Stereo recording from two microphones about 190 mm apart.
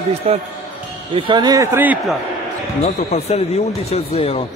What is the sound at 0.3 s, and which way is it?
Speech, 30° right (ahead or behind).